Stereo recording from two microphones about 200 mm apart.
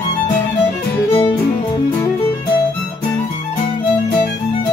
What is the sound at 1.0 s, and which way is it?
Music, 30° left (ahead or behind).